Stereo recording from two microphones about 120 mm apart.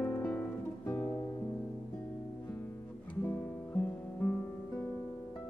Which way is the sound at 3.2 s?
20° left (ahead or behind).